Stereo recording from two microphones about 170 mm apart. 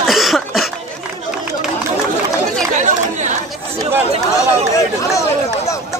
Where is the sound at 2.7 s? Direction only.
45° right (ahead or behind).